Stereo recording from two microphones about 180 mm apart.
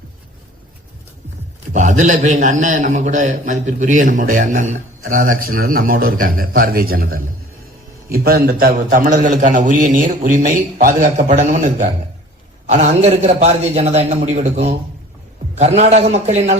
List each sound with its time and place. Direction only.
1.7 s a man's voice: 45° right (ahead or behind)